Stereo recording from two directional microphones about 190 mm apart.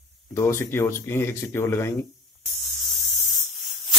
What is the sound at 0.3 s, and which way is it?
Speech, 15° left (ahead or behind).